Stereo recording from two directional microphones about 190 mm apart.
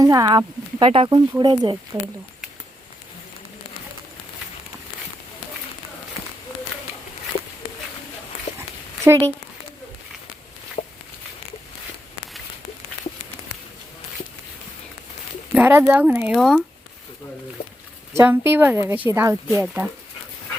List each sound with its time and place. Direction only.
0.0 s speech: 20° right (ahead or behind)
9.0 s a woman's voice: 15° right (ahead or behind)
10.8 s a sound: 30° left (ahead or behind)
15.5 s a woman's voice: 10° right (ahead or behind)
18.2 s a woman's voice: 10° right (ahead or behind)